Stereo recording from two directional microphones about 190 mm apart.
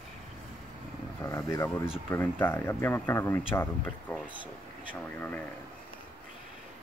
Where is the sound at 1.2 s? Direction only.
15° left (ahead or behind).